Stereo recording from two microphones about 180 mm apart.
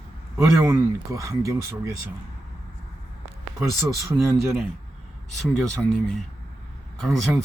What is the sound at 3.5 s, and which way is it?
Speech, 15° right (ahead or behind).